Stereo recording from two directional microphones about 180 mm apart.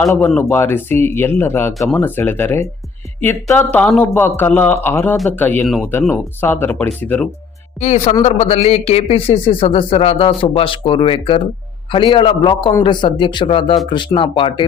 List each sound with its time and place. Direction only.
0.0 s speech: 10° left (ahead or behind)
7.8 s a man's voice: 40° left (ahead or behind)